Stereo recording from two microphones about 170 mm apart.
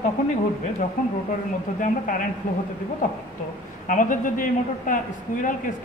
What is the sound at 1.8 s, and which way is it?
Speech, 55° left (ahead or behind).